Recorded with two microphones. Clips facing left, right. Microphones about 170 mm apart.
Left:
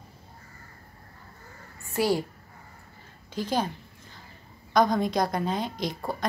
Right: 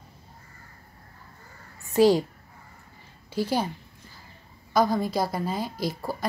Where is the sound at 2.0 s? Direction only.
15° right (ahead or behind).